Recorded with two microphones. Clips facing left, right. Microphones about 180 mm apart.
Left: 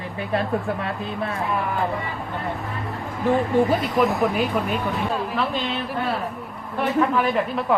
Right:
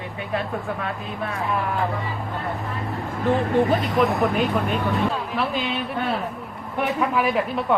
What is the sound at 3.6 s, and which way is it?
Speech, centre (ahead or behind).